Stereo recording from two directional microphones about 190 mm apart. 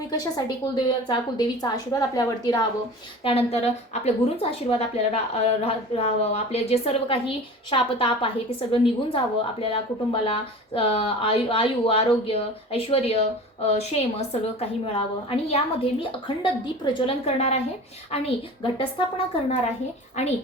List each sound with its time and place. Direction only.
1.0 s a woman's voice: 20° left (ahead or behind)
3.2 s a woman's voice: 30° left (ahead or behind)